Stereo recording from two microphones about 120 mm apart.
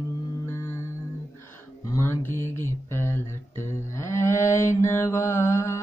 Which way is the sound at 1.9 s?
20° left (ahead or behind).